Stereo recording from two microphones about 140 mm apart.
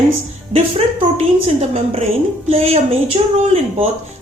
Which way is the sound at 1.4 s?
50° right (ahead or behind).